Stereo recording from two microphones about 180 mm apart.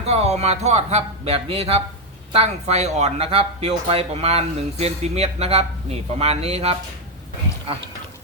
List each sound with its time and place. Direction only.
0.0 s speech: 35° right (ahead or behind)